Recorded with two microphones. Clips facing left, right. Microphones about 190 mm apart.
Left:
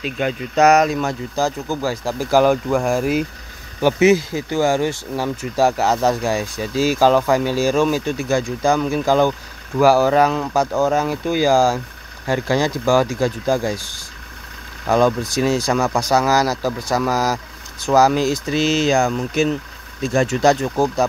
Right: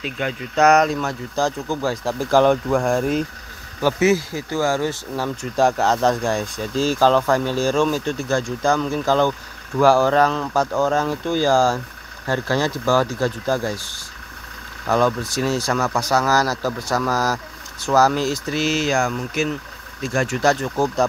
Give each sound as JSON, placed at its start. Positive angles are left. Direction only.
{"t": 0.0, "sound": "speech", "side_deg": 15}
{"t": 3.8, "sound": "speech", "side_deg": 20}
{"t": 14.9, "sound": "speech", "side_deg": 15}